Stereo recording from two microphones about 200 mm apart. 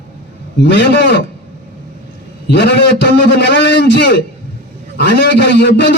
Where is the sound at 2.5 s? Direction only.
55° left (ahead or behind).